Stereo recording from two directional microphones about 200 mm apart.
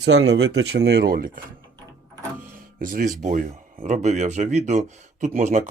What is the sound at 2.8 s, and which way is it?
Speech, 45° right (ahead or behind).